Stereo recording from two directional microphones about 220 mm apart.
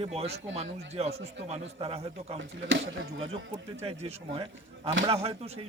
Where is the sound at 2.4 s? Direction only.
55° right (ahead or behind).